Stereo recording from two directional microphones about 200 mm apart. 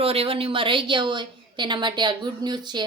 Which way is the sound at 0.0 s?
30° right (ahead or behind).